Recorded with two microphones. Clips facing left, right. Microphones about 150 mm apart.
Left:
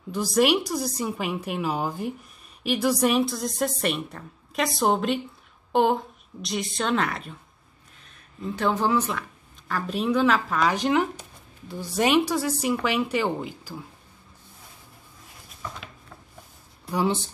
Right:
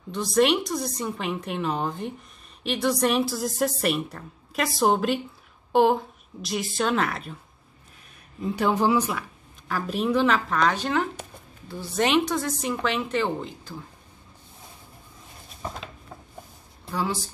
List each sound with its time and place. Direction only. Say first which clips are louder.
0.1 s a woman's voice: even; 5° left (ahead or behind)
8.4 s a woman's voice: right 2 dB; 15° right (ahead or behind); by 10.8 s 5° left (ahead or behind)
10.8 s speech: left 3 dB; 15° left (ahead or behind)
16.9 s speech: left 4 dB; 20° left (ahead or behind)